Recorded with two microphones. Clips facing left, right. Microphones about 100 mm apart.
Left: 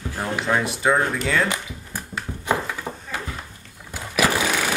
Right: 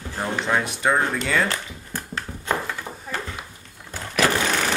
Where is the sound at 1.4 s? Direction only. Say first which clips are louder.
Left 1 dB; 10° left (ahead or behind).